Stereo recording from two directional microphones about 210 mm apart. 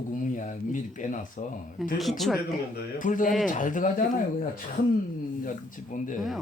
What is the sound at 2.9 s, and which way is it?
Speech, 40° left (ahead or behind).